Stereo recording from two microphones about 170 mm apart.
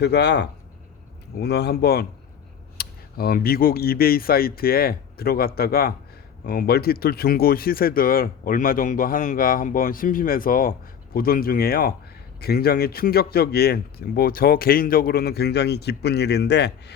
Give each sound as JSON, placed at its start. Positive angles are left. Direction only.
{"t": 0.0, "sound": "speech", "side_deg": 75}